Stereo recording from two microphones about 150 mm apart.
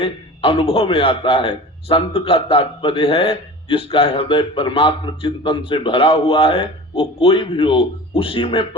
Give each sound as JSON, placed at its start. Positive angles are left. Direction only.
{"t": 0.0, "sound": "a man's voice", "side_deg": 40}